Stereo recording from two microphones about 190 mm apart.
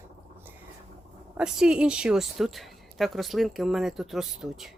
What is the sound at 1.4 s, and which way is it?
Speech, 5° right (ahead or behind).